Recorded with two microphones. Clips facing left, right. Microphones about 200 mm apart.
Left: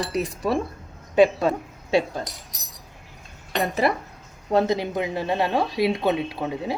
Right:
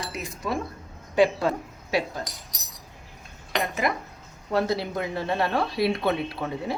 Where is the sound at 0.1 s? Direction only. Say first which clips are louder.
Left 6 dB; 35° left (ahead or behind).